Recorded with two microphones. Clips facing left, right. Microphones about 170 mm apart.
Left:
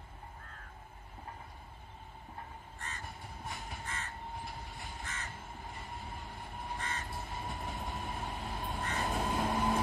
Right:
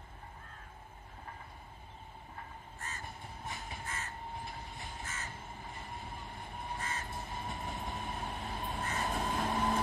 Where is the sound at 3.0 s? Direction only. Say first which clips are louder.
Even; centre (ahead or behind).